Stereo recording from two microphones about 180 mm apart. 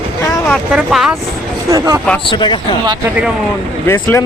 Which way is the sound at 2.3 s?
25° left (ahead or behind).